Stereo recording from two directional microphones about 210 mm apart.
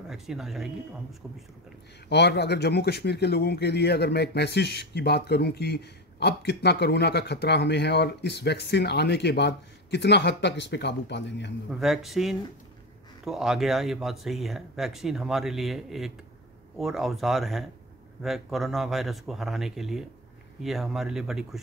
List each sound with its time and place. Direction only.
0.1 s speech: centre (ahead or behind)
2.0 s speech: 55° left (ahead or behind)
11.7 s speech: centre (ahead or behind)